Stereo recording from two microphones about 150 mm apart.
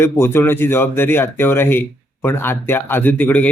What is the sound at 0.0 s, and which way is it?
Speech, 15° left (ahead or behind).